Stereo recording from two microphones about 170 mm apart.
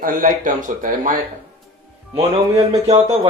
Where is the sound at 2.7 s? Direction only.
35° right (ahead or behind).